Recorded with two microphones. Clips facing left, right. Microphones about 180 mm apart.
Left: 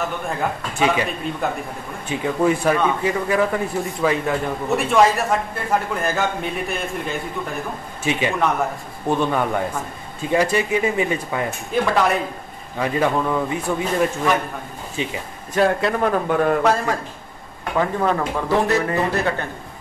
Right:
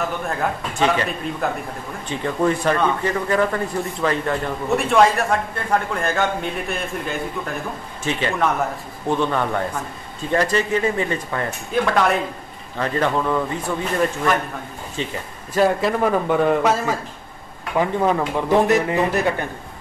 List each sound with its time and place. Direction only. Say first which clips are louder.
0.0 s a man's voice: right 1 dB; 5° left (ahead or behind)
15.0 s speech: left 1 dB; 10° left (ahead or behind)
15.5 s a man's voice: right 1 dB; centre (ahead or behind)
17.7 s speech: right 1 dB; 15° right (ahead or behind)